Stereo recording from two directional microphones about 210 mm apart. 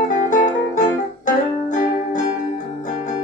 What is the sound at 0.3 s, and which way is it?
Music, 40° left (ahead or behind).